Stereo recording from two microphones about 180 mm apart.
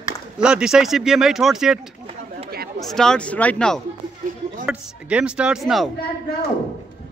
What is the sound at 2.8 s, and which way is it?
Speech, 5° left (ahead or behind).